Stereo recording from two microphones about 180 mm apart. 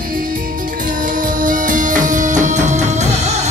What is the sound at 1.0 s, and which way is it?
Music, 50° right (ahead or behind).